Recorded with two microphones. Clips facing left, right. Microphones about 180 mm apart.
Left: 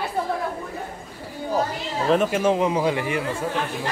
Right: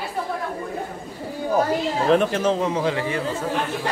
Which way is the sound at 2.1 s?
5° left (ahead or behind).